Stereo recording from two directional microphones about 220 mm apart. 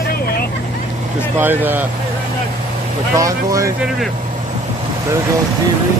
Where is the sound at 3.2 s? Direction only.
15° right (ahead or behind).